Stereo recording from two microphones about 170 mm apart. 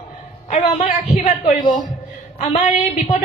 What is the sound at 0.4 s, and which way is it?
A man's voice, 40° left (ahead or behind).